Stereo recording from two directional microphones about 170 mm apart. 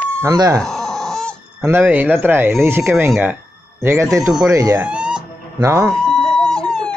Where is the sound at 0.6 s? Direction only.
Centre (ahead or behind).